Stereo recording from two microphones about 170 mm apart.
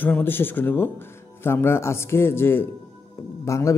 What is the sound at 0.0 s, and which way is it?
A man's voice, 10° left (ahead or behind).